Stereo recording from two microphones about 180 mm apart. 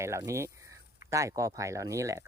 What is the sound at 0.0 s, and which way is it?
Speech, 15° right (ahead or behind).